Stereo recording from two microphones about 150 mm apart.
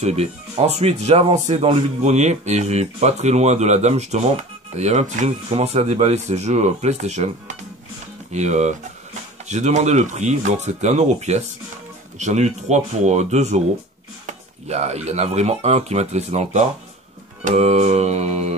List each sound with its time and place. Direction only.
0.0 s speech: 45° right (ahead or behind)
17.5 s mantra: 45° right (ahead or behind)